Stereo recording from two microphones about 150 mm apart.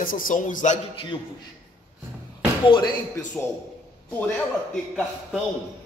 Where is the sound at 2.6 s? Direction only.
30° left (ahead or behind).